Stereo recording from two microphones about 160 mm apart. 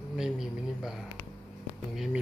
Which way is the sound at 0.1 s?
5° right (ahead or behind).